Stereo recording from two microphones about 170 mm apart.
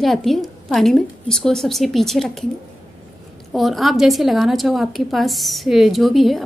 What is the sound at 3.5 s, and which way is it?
A woman's voice, centre (ahead or behind).